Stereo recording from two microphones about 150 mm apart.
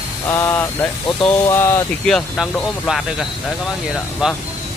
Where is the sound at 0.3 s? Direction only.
20° left (ahead or behind).